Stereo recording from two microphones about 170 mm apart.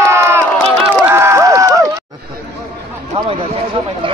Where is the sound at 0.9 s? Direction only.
15° right (ahead or behind).